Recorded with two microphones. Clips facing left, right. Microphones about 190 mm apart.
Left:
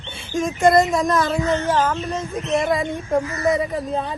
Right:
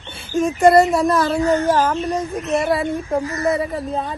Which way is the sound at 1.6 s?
35° right (ahead or behind).